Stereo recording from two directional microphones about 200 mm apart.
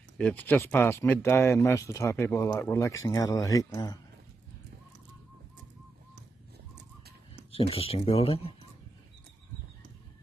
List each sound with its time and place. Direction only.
0.2 s speech: 5° left (ahead or behind)
7.7 s speech: 30° left (ahead or behind)